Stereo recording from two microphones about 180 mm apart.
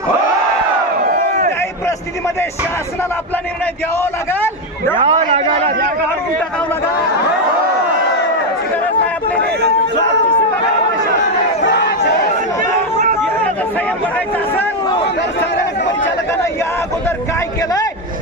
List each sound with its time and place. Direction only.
4.0 s a man's voice: 10° left (ahead or behind)
4.9 s a man's voice: 35° right (ahead or behind)
11.6 s crowd: 70° left (ahead or behind)